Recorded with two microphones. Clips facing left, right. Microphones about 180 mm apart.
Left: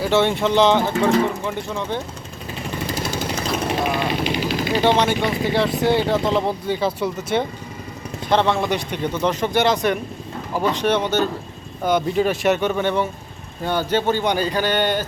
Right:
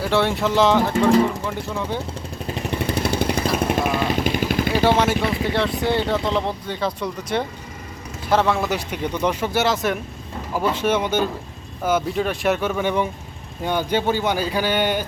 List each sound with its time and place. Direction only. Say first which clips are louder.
0.0 s speech: left 2 dB; centre (ahead or behind)
2.8 s vehicle: right 4 dB; 60° right (ahead or behind)
4.7 s speech: left 1 dB; 5° right (ahead or behind)